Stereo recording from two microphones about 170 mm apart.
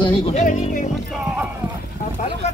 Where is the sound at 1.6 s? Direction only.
5° right (ahead or behind).